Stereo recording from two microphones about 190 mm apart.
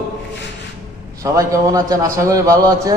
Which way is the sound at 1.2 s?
20° right (ahead or behind).